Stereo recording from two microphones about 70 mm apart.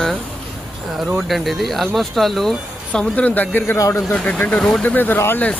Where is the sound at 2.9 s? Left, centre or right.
Centre.